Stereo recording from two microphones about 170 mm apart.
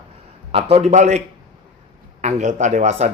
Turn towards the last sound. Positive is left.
turn(degrees=-40)  # may be behind; listen again after turning